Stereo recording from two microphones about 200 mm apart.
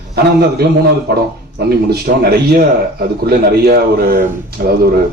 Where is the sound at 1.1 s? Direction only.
50° right (ahead or behind).